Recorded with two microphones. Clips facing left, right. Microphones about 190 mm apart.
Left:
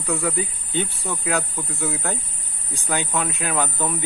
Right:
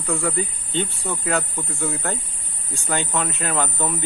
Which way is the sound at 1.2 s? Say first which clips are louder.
Even; centre (ahead or behind).